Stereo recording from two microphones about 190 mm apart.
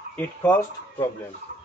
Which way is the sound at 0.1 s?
10° left (ahead or behind).